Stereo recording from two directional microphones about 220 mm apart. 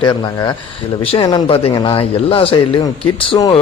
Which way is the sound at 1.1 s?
20° left (ahead or behind).